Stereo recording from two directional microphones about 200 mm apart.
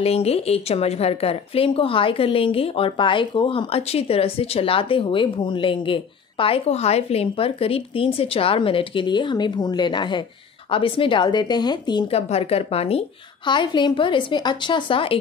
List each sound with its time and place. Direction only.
0.0 s a woman's voice: 30° left (ahead or behind)